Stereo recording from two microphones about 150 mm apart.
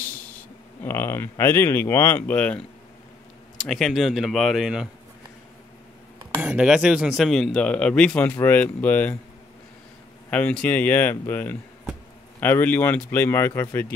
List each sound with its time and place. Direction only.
0.8 s speech: 15° left (ahead or behind)
3.6 s speech: centre (ahead or behind)
6.4 s speech: 5° right (ahead or behind); by 9.2 s 10° left (ahead or behind)
10.3 s speech: 10° left (ahead or behind)